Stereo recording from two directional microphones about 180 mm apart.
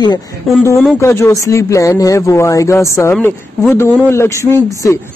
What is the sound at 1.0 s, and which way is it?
A man's voice, 15° left (ahead or behind).